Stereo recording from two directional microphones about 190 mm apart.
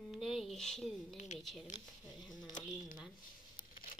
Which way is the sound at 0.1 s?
Centre (ahead or behind).